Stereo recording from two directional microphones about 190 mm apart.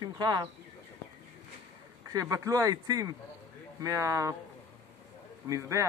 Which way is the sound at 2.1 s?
15° right (ahead or behind).